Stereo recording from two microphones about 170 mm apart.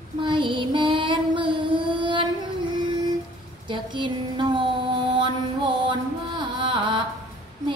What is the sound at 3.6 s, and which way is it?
Child singing, 30° right (ahead or behind).